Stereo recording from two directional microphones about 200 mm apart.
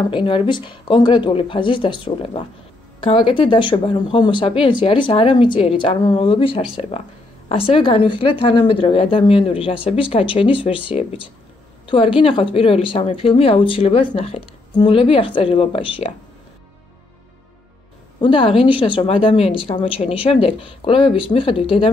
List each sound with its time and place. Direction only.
0.1 s speech: 25° left (ahead or behind)
18.2 s speech: 25° left (ahead or behind)